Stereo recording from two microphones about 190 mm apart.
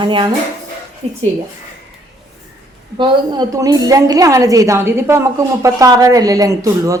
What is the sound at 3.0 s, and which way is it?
A woman's voice, 20° right (ahead or behind).